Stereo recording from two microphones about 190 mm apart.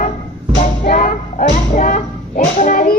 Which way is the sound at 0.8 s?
45° left (ahead or behind).